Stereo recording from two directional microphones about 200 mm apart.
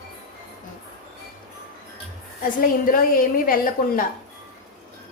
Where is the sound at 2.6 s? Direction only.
45° left (ahead or behind).